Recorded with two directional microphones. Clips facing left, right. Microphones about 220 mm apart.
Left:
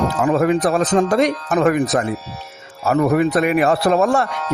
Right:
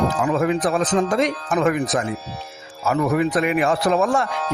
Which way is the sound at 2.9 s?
40° left (ahead or behind).